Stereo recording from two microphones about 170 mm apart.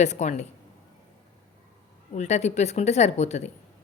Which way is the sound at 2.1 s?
40° left (ahead or behind).